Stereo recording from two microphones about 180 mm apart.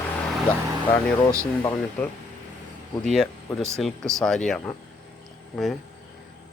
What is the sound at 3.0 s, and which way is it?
Speech, 5° left (ahead or behind).